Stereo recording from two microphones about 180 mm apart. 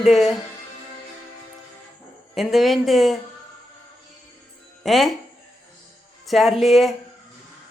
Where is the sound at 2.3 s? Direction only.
Centre (ahead or behind).